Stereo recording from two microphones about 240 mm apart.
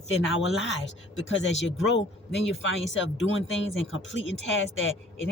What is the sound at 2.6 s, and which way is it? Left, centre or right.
Speech, left.